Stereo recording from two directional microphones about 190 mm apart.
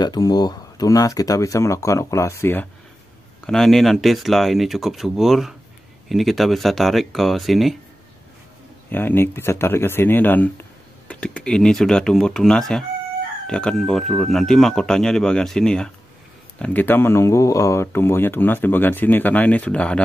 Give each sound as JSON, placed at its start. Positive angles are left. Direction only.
{"t": 0.0, "sound": "speech", "side_deg": 20}
{"t": 8.9, "sound": "speech", "side_deg": 10}